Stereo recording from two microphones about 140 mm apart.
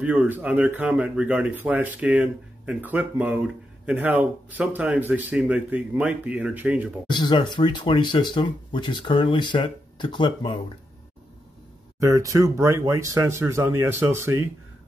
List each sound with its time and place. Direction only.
0.0 s speech: 10° right (ahead or behind)
7.1 s speech: 35° left (ahead or behind)
12.0 s speech: 25° right (ahead or behind)